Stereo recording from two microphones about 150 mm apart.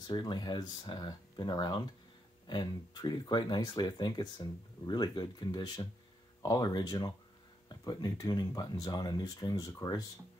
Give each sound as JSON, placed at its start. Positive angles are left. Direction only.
{"t": 0.0, "sound": "speech", "side_deg": 30}